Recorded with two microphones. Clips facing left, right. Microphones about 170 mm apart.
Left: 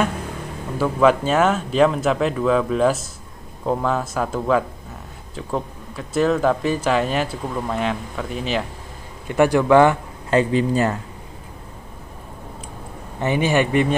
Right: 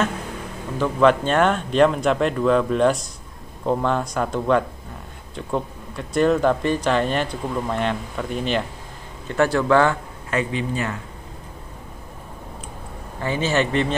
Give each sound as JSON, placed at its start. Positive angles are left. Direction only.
{"t": 0.7, "sound": "speech", "side_deg": 5}
{"t": 9.3, "sound": "a man's voice", "side_deg": 15}
{"t": 10.3, "sound": "a man's voice", "side_deg": 35}
{"t": 13.2, "sound": "a man's voice", "side_deg": 15}